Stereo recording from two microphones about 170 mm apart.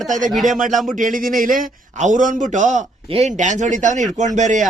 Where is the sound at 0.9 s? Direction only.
50° right (ahead or behind).